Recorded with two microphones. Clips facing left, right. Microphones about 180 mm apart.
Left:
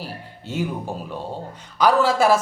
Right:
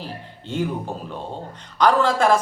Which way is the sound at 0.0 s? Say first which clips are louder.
Even; 10° left (ahead or behind).